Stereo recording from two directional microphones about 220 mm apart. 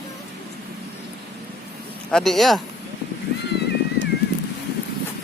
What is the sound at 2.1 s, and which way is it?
Speech, centre (ahead or behind).